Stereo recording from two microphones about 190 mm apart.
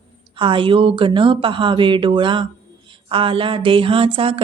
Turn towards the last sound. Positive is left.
turn(degrees=-30)  # may be behind; listen again after turning